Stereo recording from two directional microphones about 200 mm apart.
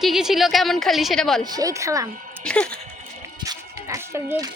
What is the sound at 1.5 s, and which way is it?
Speech, 15° right (ahead or behind).